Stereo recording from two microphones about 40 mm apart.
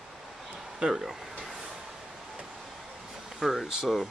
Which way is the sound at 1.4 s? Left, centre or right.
Centre.